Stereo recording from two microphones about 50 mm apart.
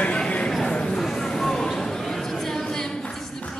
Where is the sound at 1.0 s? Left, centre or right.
Centre.